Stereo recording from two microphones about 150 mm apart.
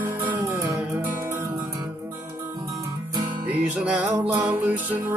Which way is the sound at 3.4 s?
10° right (ahead or behind).